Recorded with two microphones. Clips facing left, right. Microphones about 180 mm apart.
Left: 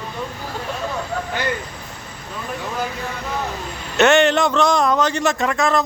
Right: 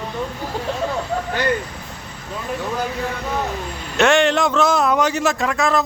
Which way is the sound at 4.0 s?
Centre (ahead or behind).